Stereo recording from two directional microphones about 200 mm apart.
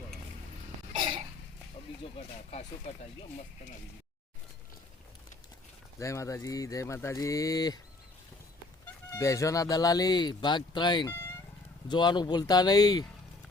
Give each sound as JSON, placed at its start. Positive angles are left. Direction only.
{"t": 2.1, "sound": "speech", "side_deg": 30}
{"t": 6.0, "sound": "speech", "side_deg": 15}
{"t": 9.0, "sound": "speech", "side_deg": 15}